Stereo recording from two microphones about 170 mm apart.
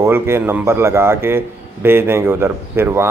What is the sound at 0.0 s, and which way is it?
Speech, 15° right (ahead or behind).